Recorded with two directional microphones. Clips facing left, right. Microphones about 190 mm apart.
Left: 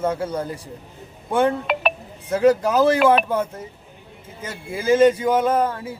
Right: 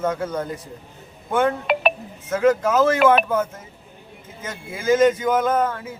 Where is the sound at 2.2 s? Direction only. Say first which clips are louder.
Left 1 dB; 35° left (ahead or behind).